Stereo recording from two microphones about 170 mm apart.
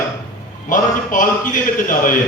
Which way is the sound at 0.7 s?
50° left (ahead or behind).